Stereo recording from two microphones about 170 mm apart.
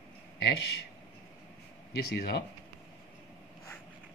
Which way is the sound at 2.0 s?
70° left (ahead or behind).